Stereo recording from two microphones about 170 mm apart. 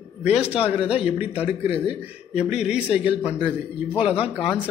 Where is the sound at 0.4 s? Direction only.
35° left (ahead or behind).